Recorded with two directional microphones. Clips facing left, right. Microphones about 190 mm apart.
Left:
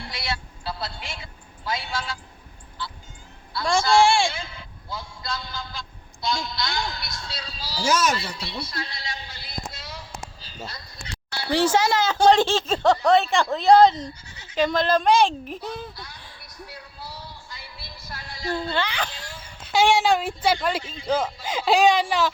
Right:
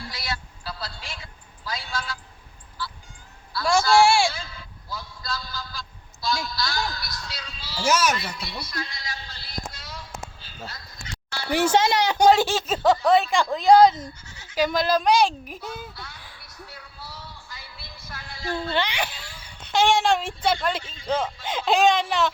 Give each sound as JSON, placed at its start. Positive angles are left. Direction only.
{"t": 0.0, "sound": "a sound", "side_deg": 25}
{"t": 3.6, "sound": "speech", "side_deg": 0}
{"t": 4.3, "sound": "a man's voice", "side_deg": 25}
{"t": 7.9, "sound": "speech", "side_deg": -5}
{"t": 8.1, "sound": "a sound", "side_deg": 30}
{"t": 11.4, "sound": "speech", "side_deg": -10}
{"t": 12.3, "sound": "speech", "side_deg": -5}
{"t": 18.5, "sound": "speech", "side_deg": -15}
{"t": 19.6, "sound": "speech", "side_deg": 5}